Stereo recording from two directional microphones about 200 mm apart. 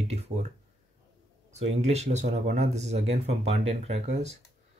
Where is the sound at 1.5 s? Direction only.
35° right (ahead or behind).